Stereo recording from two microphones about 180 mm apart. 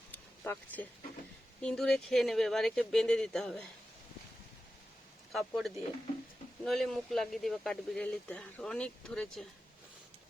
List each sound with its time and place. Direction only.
0.1 s a sound: 10° left (ahead or behind)
1.6 s speech: 5° left (ahead or behind)
5.3 s speech: centre (ahead or behind)